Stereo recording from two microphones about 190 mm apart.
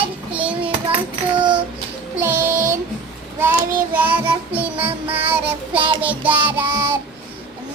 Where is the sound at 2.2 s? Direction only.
15° right (ahead or behind).